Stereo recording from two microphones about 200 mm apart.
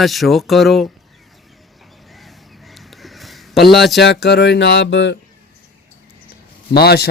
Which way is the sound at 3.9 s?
55° left (ahead or behind).